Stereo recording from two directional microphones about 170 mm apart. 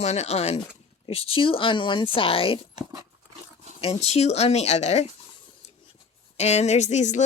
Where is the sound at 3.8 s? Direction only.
35° left (ahead or behind).